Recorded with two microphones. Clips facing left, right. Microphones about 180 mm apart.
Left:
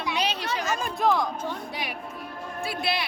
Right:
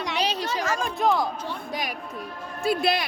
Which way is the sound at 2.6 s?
45° right (ahead or behind).